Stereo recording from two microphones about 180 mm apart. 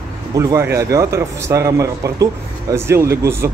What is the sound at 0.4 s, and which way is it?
Speech, 15° right (ahead or behind).